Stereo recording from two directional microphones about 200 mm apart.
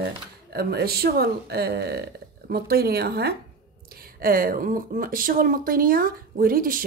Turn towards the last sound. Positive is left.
turn(degrees=-45)  # may be behind; listen again after turning